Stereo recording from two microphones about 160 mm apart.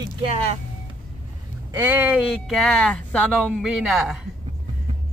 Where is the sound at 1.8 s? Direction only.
10° right (ahead or behind).